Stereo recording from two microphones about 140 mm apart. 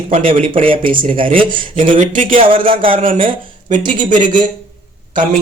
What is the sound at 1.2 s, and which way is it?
Speech, 70° right (ahead or behind).